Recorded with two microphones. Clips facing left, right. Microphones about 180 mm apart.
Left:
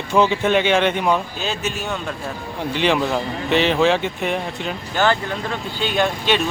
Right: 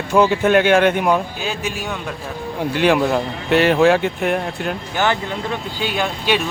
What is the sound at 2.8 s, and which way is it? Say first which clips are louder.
Speech: right 3 dB; 5° right (ahead or behind).